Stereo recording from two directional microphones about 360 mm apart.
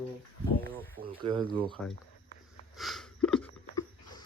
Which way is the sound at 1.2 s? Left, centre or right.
Centre.